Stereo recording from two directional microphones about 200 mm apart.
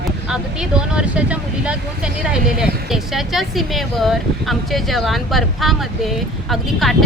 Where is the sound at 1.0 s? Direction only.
5° right (ahead or behind).